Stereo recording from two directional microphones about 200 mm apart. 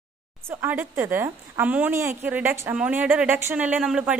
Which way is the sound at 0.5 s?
10° right (ahead or behind).